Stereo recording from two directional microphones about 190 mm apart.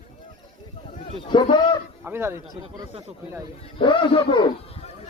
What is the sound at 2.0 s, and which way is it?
Speech, 10° right (ahead or behind).